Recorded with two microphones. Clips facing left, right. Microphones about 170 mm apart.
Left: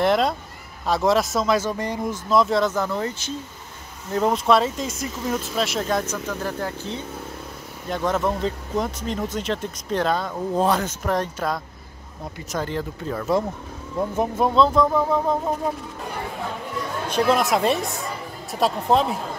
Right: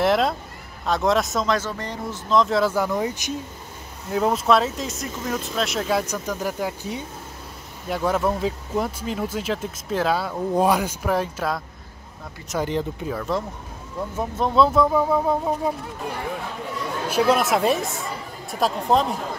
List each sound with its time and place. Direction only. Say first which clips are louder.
0.0 s speech: even; centre (ahead or behind)
4.1 s speech: even; 5° right (ahead or behind)
6.1 s speech: right 1 dB; 15° right (ahead or behind)
12.6 s speech: right 2 dB; 15° right (ahead or behind)
13.3 s speech: left 5 dB; 15° left (ahead or behind)
14.5 s speech: right 2 dB; 5° right (ahead or behind)
17.1 s speech: even; centre (ahead or behind)